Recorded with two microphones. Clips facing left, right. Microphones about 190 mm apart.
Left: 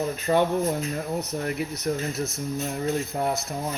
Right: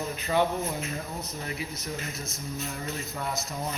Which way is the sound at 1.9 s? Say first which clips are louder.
Left 11 dB; 55° left (ahead or behind).